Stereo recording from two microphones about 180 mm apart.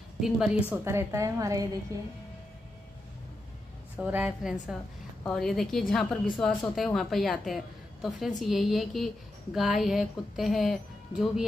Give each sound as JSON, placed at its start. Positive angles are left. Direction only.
{"t": 0.2, "sound": "a woman's voice", "side_deg": 0}
{"t": 0.8, "sound": "a woman's voice", "side_deg": -15}
{"t": 4.0, "sound": "a woman's voice", "side_deg": -5}